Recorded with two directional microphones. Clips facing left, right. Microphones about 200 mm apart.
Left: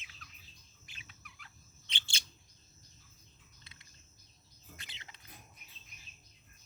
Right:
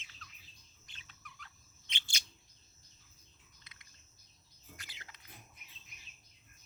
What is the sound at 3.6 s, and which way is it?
Bird, 30° left (ahead or behind).